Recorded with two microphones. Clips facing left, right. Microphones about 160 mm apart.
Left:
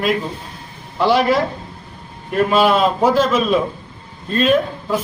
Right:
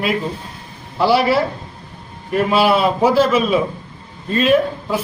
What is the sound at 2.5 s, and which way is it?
A man's voice, 10° right (ahead or behind).